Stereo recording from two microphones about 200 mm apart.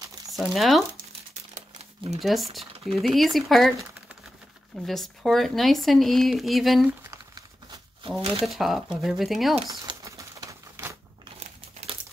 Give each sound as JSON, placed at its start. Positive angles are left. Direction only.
{"t": 0.3, "sound": "speech", "side_deg": 0}
{"t": 2.1, "sound": "speech", "side_deg": 0}
{"t": 4.8, "sound": "speech", "side_deg": 0}
{"t": 7.0, "sound": "crumpling", "side_deg": -20}
{"t": 8.5, "sound": "speech", "side_deg": 0}
{"t": 9.7, "sound": "a sound", "side_deg": -20}
{"t": 11.3, "sound": "crumpling", "side_deg": -30}